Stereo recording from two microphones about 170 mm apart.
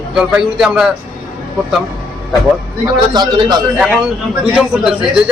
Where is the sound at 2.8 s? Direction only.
25° right (ahead or behind).